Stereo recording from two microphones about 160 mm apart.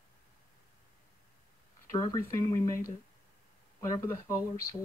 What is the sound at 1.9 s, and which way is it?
Speech, 20° left (ahead or behind).